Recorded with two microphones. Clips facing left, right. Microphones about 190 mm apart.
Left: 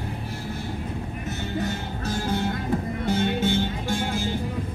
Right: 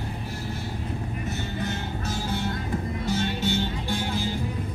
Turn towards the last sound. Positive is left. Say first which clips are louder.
# left 2 dB
turn(degrees=50)  # may be behind; listen again after turning